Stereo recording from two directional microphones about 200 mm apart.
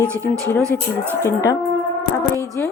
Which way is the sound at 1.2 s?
15° left (ahead or behind).